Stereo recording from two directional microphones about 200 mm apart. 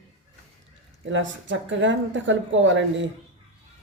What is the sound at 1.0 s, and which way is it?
Speech, 70° right (ahead or behind).